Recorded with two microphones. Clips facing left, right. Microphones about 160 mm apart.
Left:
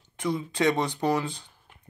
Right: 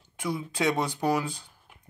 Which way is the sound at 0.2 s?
5° right (ahead or behind).